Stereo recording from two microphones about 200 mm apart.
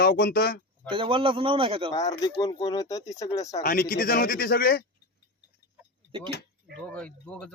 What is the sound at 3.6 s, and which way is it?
Speech, 45° left (ahead or behind).